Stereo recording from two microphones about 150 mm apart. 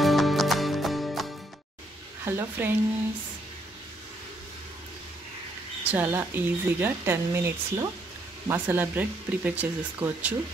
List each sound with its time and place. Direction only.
0.0 s music: centre (ahead or behind)
2.2 s speech: 15° right (ahead or behind)
5.9 s speech: 15° right (ahead or behind)